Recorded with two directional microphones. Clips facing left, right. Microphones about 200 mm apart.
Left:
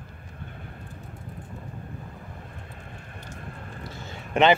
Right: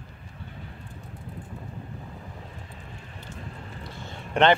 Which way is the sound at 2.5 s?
55° left (ahead or behind).